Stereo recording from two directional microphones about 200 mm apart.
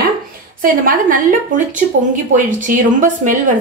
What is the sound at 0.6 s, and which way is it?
Speech, 45° right (ahead or behind).